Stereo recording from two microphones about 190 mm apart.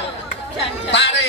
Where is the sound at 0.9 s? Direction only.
65° left (ahead or behind).